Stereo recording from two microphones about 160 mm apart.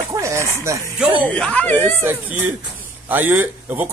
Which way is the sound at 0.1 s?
15° right (ahead or behind).